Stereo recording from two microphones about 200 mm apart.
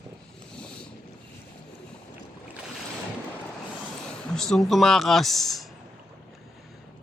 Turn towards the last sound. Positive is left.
turn(degrees=0)  # may be behind; listen again after turning